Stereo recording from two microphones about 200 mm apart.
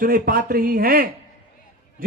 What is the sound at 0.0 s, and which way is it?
A man's voice, 45° right (ahead or behind).